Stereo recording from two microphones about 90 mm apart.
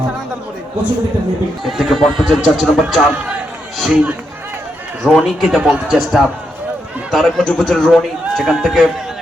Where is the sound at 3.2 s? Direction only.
10° right (ahead or behind).